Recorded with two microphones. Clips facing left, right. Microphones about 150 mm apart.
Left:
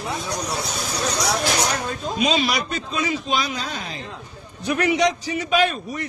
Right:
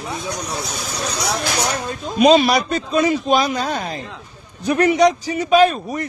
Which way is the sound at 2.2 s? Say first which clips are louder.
Right 10 dB; 50° right (ahead or behind).